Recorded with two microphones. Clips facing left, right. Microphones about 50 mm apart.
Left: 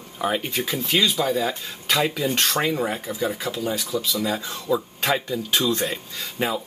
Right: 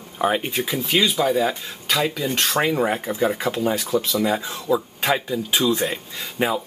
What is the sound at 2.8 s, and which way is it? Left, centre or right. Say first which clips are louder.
Speech: right 4 dB; right.